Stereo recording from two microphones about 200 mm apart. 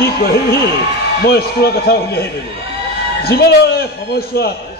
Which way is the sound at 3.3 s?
50° left (ahead or behind).